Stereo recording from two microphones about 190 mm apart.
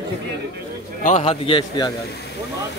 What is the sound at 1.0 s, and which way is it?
Speech, 35° left (ahead or behind).